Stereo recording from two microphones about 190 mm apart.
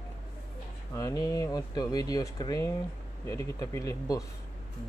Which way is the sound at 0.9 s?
15° left (ahead or behind).